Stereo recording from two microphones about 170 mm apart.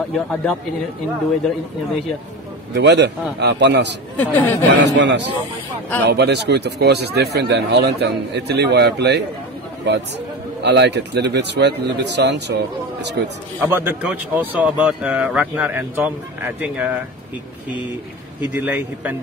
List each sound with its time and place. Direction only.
0.1 s a man's voice: 5° left (ahead or behind)
2.7 s speech: 85° right
4.2 s speech: 10° left (ahead or behind)
4.9 s a man's voice: 90° right
10.6 s a man's voice: 90° right
13.6 s speech: 10° right (ahead or behind)
18.4 s speech: 10° right (ahead or behind)